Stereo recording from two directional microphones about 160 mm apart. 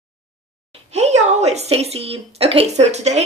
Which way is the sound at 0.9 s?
45° right (ahead or behind).